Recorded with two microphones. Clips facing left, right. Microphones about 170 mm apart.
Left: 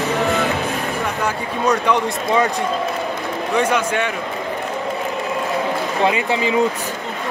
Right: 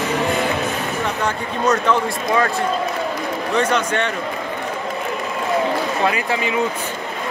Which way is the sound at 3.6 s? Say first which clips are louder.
Left 1 dB; 10° left (ahead or behind).